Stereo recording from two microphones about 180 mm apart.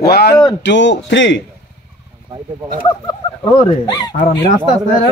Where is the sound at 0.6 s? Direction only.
85° left.